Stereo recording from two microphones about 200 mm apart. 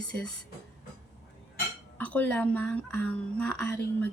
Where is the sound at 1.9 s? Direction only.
10° left (ahead or behind).